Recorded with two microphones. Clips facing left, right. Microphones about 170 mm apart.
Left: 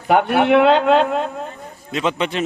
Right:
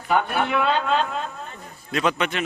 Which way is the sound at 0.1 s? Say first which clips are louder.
Left 8 dB; 70° left (ahead or behind).